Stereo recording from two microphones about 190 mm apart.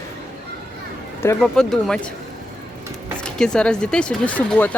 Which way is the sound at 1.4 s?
5° left (ahead or behind).